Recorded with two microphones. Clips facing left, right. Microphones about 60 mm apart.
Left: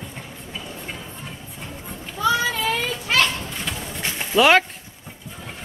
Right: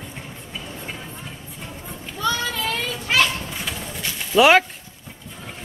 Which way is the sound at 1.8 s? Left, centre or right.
Centre.